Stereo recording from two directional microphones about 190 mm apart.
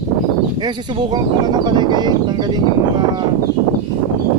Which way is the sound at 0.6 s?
25° right (ahead or behind).